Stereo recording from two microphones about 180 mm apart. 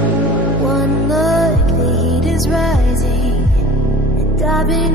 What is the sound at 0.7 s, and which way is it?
Music, centre (ahead or behind).